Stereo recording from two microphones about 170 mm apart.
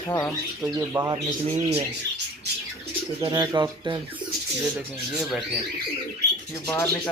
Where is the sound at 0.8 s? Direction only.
20° right (ahead or behind).